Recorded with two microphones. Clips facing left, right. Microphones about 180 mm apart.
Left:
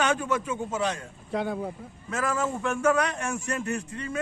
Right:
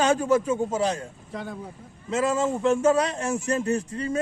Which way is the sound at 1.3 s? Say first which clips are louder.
Left 7 dB; 65° left (ahead or behind).